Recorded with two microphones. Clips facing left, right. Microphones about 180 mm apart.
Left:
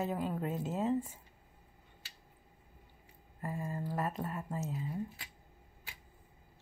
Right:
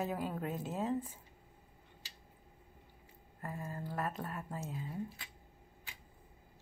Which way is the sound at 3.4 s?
10° left (ahead or behind).